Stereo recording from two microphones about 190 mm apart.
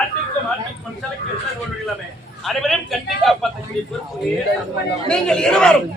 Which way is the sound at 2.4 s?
Centre (ahead or behind).